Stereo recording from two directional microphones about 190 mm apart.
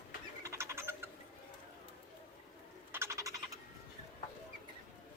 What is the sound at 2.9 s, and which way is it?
Bird, 15° right (ahead or behind).